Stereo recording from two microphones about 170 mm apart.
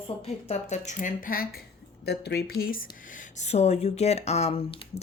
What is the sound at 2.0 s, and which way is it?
Speech, 70° left (ahead or behind).